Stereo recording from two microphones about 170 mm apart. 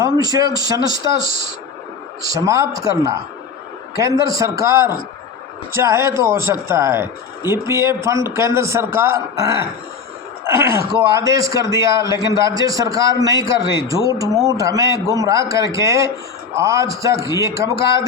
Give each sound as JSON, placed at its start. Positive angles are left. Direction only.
{"t": 0.0, "sound": "speech", "side_deg": -20}
{"t": 2.3, "sound": "a man's voice", "side_deg": -20}
{"t": 4.0, "sound": "a man's voice", "side_deg": -20}
{"t": 5.7, "sound": "a man's voice", "side_deg": -15}